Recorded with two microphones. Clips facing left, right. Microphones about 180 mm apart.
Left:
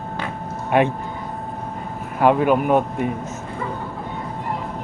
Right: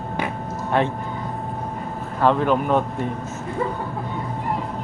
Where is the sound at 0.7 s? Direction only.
15° left (ahead or behind).